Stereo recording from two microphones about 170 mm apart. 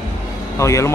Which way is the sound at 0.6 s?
15° left (ahead or behind).